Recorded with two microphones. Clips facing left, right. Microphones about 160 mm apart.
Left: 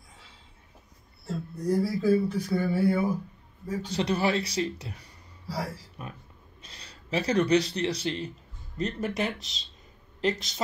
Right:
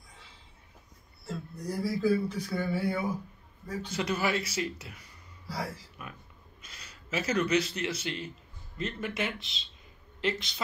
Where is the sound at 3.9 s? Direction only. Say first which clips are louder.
Left 4 dB; 35° left (ahead or behind).